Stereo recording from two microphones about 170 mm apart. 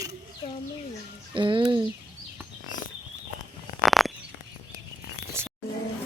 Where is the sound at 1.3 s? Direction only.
30° right (ahead or behind).